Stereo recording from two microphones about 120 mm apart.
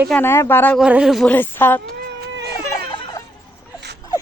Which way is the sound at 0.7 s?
5° right (ahead or behind).